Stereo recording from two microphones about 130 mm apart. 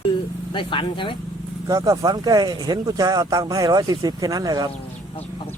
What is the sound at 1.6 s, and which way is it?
Speech, 30° right (ahead or behind).